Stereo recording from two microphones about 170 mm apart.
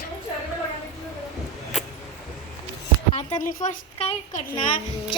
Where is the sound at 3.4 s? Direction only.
50° left (ahead or behind).